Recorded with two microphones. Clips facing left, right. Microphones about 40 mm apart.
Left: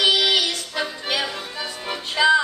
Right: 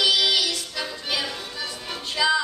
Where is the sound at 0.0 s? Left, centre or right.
Left.